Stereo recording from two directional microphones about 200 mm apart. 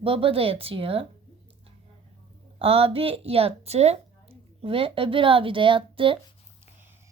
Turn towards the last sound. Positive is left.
turn(degrees=-25)  # may be behind; listen again after turning